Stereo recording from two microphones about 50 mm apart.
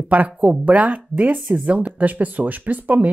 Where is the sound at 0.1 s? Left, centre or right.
Right.